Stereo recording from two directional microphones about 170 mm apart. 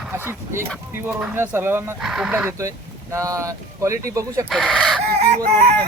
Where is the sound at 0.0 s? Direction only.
10° right (ahead or behind).